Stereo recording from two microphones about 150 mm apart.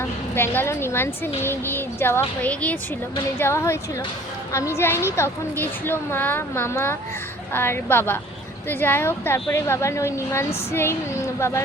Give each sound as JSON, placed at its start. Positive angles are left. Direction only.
{"t": 0.3, "sound": "a woman's voice", "side_deg": 15}